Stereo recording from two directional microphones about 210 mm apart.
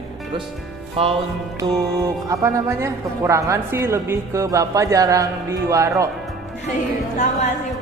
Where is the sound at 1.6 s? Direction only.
15° right (ahead or behind).